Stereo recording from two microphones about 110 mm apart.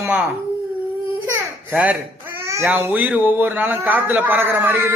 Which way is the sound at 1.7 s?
15° right (ahead or behind).